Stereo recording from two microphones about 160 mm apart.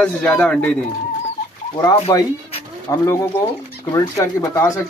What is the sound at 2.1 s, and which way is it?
Speech, 25° left (ahead or behind).